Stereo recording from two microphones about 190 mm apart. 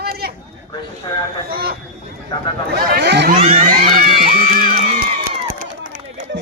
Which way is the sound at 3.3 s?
35° right (ahead or behind).